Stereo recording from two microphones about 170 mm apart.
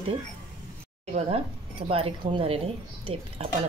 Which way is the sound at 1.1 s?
35° right (ahead or behind).